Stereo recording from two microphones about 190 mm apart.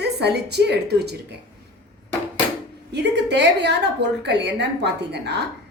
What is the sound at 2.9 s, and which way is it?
A woman's voice, 65° right (ahead or behind).